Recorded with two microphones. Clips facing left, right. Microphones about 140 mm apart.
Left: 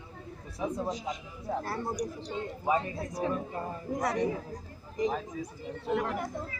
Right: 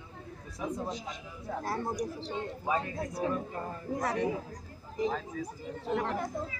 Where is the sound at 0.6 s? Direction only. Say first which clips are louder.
Left 2 dB; 20° left (ahead or behind).